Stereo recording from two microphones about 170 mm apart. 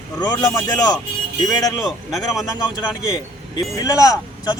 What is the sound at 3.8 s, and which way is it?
Speech, 20° left (ahead or behind).